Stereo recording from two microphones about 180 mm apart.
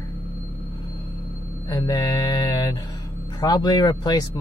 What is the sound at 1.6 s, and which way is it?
Speech, 20° left (ahead or behind).